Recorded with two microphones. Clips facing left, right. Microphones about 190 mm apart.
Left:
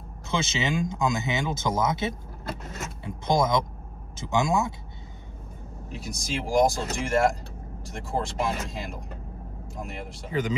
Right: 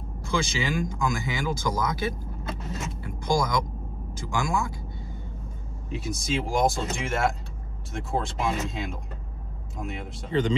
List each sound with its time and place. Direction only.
0.3 s speech: 25° left (ahead or behind)
5.9 s speech: centre (ahead or behind)